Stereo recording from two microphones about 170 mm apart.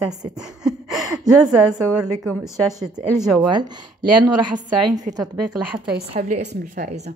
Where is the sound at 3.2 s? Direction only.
Centre (ahead or behind).